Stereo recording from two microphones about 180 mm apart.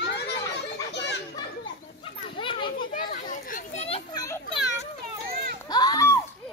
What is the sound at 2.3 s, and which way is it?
Children playing, 30° left (ahead or behind).